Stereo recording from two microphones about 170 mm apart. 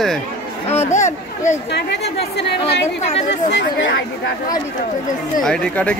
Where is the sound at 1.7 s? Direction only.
80° left.